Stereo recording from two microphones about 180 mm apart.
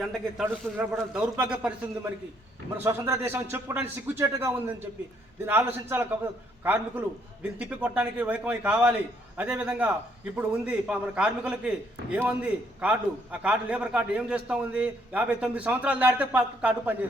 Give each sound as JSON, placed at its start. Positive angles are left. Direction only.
{"t": 0.0, "sound": "a man's voice", "side_deg": 0}